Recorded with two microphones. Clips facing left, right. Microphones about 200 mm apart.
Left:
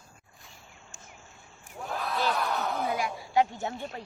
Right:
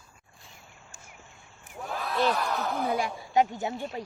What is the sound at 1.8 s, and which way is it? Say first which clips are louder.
Crowd: right 3 dB; centre (ahead or behind).